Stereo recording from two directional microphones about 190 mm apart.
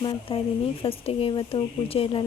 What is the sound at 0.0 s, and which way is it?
Speech, 30° left (ahead or behind).